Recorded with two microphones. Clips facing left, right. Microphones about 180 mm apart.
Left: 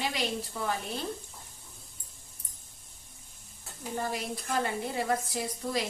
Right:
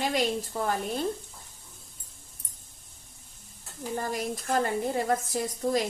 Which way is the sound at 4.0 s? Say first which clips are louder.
Right 1 dB; 45° right (ahead or behind).